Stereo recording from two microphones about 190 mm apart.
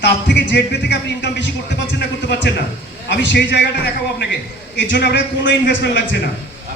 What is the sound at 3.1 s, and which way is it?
Speech, 65° left (ahead or behind).